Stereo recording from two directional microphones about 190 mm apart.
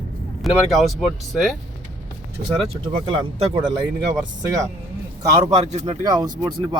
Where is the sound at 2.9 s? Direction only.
25° right (ahead or behind).